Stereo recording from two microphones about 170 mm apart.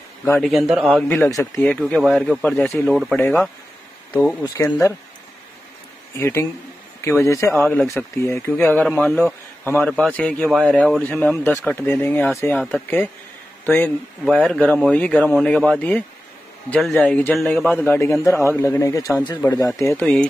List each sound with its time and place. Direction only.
0.4 s a man's voice: centre (ahead or behind)
6.1 s a man's voice: 15° left (ahead or behind)
17.8 s speech: 10° left (ahead or behind)